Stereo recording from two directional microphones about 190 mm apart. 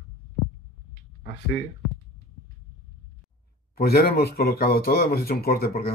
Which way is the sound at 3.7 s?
55° left (ahead or behind).